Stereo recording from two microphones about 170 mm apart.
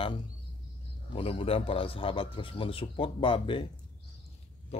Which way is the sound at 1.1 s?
35° left (ahead or behind).